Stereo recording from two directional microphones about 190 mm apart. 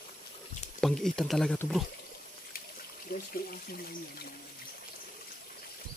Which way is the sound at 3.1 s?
50° left (ahead or behind).